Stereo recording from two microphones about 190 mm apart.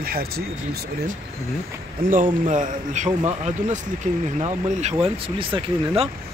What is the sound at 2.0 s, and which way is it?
Speech, 50° right (ahead or behind).